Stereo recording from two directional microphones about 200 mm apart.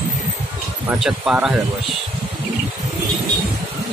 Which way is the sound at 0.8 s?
Centre (ahead or behind).